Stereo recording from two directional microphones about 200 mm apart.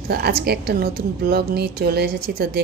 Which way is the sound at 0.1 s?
50° right (ahead or behind).